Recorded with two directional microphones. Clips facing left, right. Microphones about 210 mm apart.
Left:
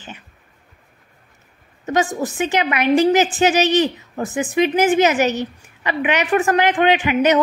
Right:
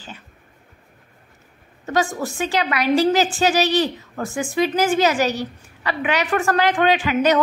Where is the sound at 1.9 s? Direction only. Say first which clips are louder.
Left 2 dB; 20° left (ahead or behind).